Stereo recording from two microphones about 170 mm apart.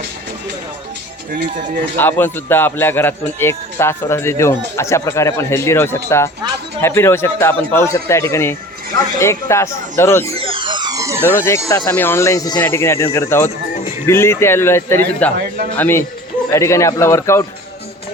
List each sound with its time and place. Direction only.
1.3 s speech: 55° right (ahead or behind)
2.0 s speech: 10° left (ahead or behind)
10.3 s a sound: 30° right (ahead or behind)
11.3 s speech: 15° left (ahead or behind)